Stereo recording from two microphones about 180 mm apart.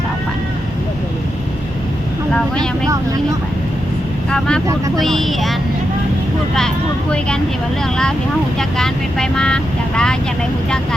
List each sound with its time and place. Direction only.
4.3 s speech: 5° left (ahead or behind)
8.5 s speech: 5° left (ahead or behind)